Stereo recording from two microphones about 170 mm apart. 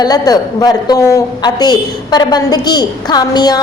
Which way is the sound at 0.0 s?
20° left (ahead or behind).